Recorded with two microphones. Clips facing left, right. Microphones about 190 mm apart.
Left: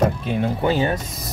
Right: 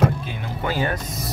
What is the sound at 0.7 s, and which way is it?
Speech, 25° left (ahead or behind).